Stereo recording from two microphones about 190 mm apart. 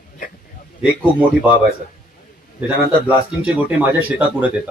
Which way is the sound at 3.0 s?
5° right (ahead or behind).